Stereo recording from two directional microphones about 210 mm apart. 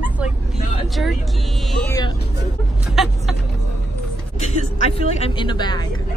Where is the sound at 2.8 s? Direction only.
Centre (ahead or behind).